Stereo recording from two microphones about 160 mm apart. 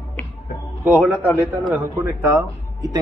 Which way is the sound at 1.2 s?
10° left (ahead or behind).